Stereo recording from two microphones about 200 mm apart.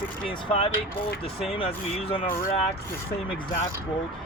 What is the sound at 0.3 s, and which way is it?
Speech, 25° left (ahead or behind).